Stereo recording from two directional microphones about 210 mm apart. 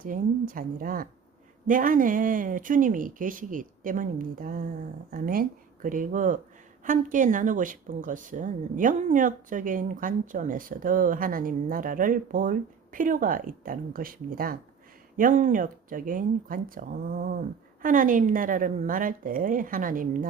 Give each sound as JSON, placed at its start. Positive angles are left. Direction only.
{"t": 0.0, "sound": "speech", "side_deg": -40}